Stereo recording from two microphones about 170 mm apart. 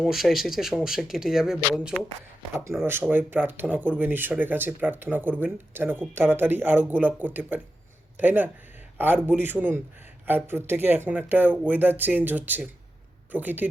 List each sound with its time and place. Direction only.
0.0 s speech: centre (ahead or behind)
3.1 s speech: 10° right (ahead or behind)